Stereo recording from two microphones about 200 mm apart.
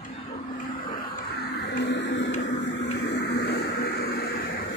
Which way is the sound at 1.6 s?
60° left (ahead or behind).